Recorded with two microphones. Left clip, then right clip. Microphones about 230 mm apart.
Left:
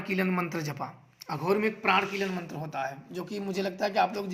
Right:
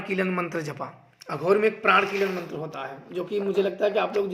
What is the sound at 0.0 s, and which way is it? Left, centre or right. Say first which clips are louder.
Speech: right 3 dB; left.